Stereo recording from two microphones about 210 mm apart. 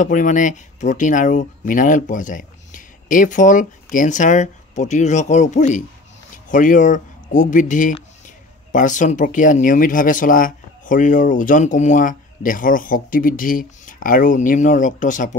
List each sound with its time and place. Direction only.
0.0 s speech: 35° left (ahead or behind)